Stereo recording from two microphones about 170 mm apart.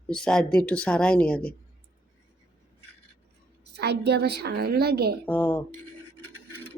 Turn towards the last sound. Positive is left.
turn(degrees=10)  # may be behind; listen again after turning